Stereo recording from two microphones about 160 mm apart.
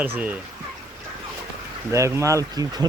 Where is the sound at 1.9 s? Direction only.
20° right (ahead or behind).